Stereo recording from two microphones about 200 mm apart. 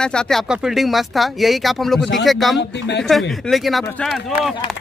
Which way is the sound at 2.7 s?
60° left (ahead or behind).